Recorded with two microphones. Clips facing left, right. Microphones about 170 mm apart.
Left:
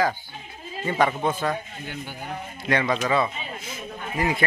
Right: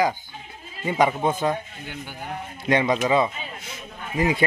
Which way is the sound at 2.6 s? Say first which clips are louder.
Right 3 dB; 20° right (ahead or behind).